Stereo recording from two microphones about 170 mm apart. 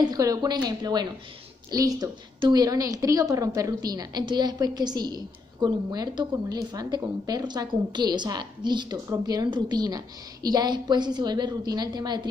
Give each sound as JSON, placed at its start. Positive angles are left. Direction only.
{"t": 0.0, "sound": "a woman's voice", "side_deg": -20}